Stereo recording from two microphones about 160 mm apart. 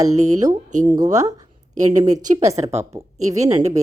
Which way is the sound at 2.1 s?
45° right (ahead or behind).